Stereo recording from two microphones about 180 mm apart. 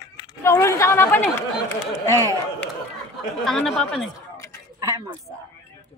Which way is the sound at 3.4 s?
Centre (ahead or behind).